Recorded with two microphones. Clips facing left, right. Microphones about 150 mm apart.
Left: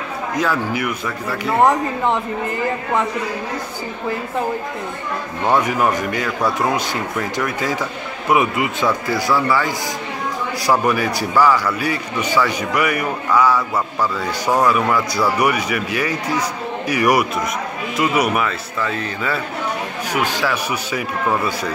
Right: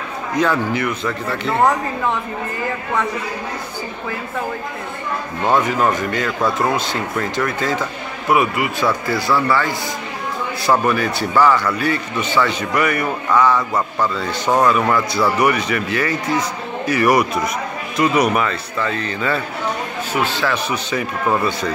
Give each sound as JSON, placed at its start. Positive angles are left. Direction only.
{"t": 0.4, "sound": "speech", "side_deg": 5}
{"t": 5.5, "sound": "speech", "side_deg": 10}
{"t": 9.3, "sound": "speech", "side_deg": 10}
{"t": 10.7, "sound": "speech", "side_deg": 10}